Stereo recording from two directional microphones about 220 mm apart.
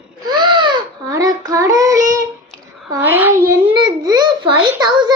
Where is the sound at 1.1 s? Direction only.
15° right (ahead or behind).